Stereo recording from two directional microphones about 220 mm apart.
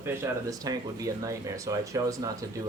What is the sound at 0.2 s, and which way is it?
Speech, 15° right (ahead or behind).